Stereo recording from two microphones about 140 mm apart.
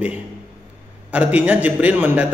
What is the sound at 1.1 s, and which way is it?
A man's voice, 10° right (ahead or behind).